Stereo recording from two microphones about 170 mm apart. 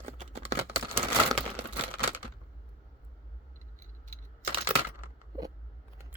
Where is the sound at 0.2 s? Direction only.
35° right (ahead or behind).